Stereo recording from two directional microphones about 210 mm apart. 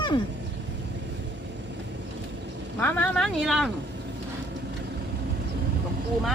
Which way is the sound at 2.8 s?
5° left (ahead or behind).